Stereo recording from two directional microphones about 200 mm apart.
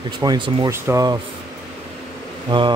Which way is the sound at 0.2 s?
20° right (ahead or behind).